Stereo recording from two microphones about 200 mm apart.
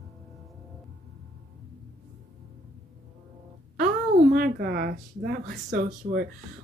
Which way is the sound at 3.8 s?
45° right (ahead or behind).